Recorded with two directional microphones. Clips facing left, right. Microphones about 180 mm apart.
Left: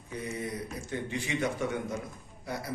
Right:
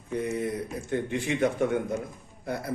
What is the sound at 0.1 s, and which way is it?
A man's voice, 55° right (ahead or behind).